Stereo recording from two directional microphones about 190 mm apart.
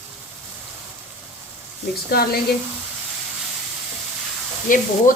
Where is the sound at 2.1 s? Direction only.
55° left (ahead or behind).